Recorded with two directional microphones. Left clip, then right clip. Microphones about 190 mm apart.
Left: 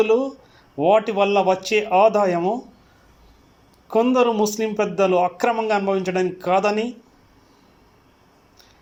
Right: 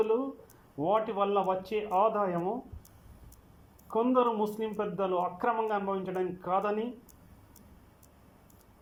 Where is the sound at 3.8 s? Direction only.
40° left (ahead or behind).